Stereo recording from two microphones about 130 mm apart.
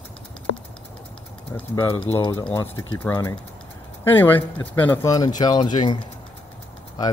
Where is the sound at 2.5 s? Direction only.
20° left (ahead or behind).